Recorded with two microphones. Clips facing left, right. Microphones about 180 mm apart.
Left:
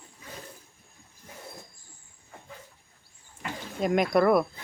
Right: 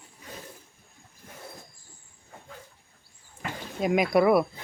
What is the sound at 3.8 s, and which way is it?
Speech, centre (ahead or behind).